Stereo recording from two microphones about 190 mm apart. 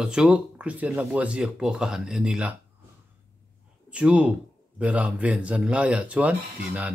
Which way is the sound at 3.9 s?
5° right (ahead or behind).